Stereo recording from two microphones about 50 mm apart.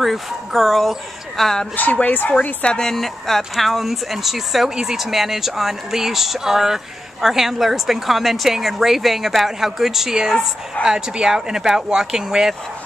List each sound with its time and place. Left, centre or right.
0.0 s speech: centre
1.8 s speech: left
2.7 s speech: centre